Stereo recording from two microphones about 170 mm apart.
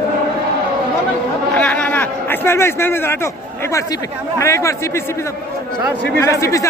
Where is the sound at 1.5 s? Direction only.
5° left (ahead or behind).